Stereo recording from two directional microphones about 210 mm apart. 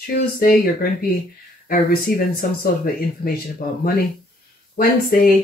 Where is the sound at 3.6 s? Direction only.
45° left (ahead or behind).